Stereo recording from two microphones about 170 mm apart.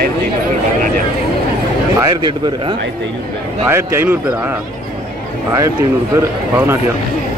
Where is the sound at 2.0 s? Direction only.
30° right (ahead or behind).